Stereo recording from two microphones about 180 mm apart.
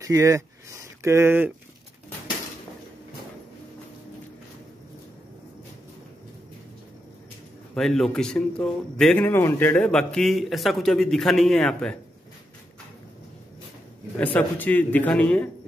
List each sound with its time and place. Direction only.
0.0 s a sound: 20° right (ahead or behind)
7.7 s speech: centre (ahead or behind)
14.1 s a man's voice: 10° left (ahead or behind)